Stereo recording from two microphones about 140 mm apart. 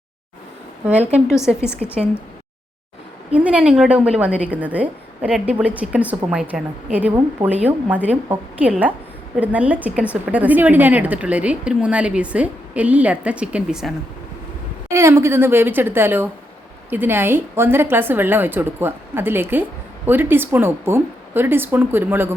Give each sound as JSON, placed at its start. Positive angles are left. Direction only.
{"t": 1.5, "sound": "a woman's voice", "side_deg": 5}
{"t": 3.3, "sound": "a woman's voice", "side_deg": -10}
{"t": 14.8, "sound": "a woman's voice", "side_deg": -20}